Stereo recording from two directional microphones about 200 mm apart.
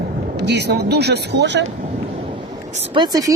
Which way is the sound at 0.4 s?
55° right (ahead or behind).